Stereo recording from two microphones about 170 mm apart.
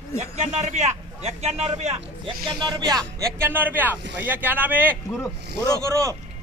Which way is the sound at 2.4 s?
25° right (ahead or behind).